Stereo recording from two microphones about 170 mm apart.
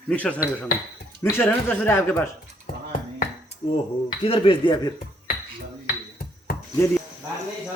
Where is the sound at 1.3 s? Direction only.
10° left (ahead or behind).